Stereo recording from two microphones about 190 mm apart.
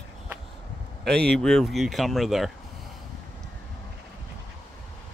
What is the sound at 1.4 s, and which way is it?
Speech, centre (ahead or behind).